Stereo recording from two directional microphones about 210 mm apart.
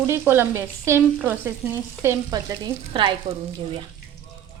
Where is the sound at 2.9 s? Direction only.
25° right (ahead or behind).